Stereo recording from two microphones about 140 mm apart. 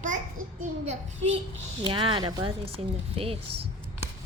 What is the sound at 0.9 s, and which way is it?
Speech, 50° right (ahead or behind).